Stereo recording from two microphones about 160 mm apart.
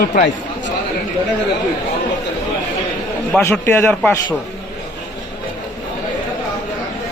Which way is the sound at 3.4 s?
15° left (ahead or behind).